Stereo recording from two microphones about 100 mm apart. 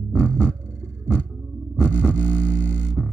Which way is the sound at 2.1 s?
15° left (ahead or behind).